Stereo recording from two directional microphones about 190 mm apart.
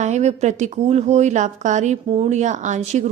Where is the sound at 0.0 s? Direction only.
35° right (ahead or behind).